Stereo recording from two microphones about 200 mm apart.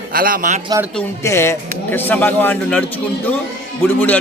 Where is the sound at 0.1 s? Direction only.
45° right (ahead or behind).